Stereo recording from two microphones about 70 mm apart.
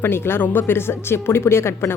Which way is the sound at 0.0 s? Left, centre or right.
Left.